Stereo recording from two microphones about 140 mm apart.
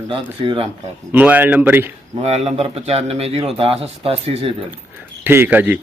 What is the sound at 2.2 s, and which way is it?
Speech, 50° right (ahead or behind).